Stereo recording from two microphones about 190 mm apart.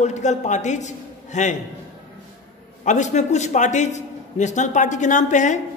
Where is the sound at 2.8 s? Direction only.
40° left (ahead or behind).